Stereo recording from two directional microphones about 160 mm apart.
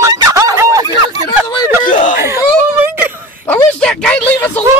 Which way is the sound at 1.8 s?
55° left (ahead or behind).